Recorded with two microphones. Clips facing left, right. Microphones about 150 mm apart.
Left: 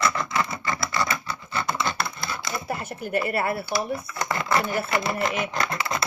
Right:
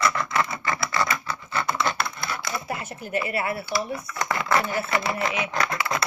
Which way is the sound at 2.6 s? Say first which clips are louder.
Left 1 dB; 45° left (ahead or behind).